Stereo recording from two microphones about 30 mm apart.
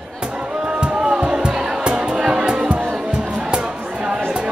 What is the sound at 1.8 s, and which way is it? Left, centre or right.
Music, right.